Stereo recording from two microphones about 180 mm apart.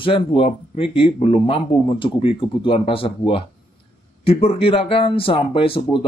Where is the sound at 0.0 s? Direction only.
30° left (ahead or behind).